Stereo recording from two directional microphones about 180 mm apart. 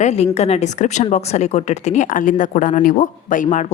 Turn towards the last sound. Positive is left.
turn(degrees=45)  # may be behind; listen again after turning